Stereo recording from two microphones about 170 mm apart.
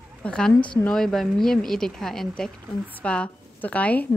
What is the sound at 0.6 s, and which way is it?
Speech, 30° left (ahead or behind).